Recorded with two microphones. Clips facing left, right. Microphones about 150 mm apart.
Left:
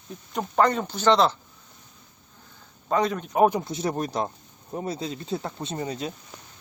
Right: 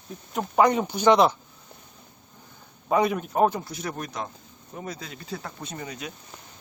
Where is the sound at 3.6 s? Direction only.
25° left (ahead or behind).